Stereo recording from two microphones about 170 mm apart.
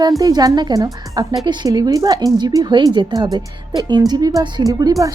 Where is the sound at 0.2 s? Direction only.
20° right (ahead or behind).